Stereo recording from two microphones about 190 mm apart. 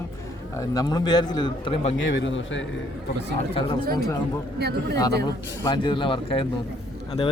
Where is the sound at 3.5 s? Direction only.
25° left (ahead or behind).